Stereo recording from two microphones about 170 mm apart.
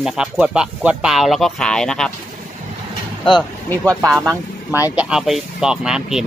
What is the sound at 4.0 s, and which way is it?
Speech, 15° right (ahead or behind).